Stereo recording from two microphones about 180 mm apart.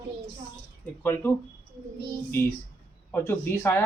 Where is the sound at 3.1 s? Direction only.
15° left (ahead or behind).